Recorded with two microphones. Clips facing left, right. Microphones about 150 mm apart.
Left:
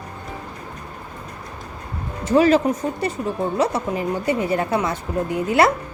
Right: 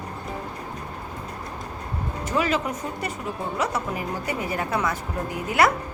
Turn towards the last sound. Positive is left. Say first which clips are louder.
# left 4 dB
turn(degrees=25)  # may be behind; listen again after turning